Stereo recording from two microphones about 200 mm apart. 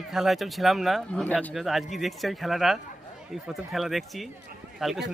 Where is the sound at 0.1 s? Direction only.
Centre (ahead or behind).